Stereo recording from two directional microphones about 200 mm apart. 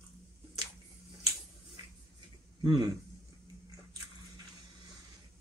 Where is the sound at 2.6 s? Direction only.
20° right (ahead or behind).